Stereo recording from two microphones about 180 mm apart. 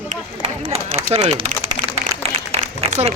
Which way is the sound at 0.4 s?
30° right (ahead or behind).